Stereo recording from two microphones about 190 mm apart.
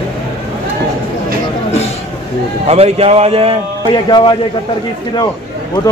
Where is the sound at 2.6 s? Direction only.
30° right (ahead or behind).